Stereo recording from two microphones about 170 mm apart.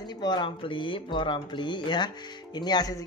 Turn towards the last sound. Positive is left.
turn(degrees=25)  # may be behind; listen again after turning